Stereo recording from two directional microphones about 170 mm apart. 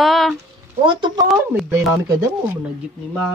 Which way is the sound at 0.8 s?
25° right (ahead or behind).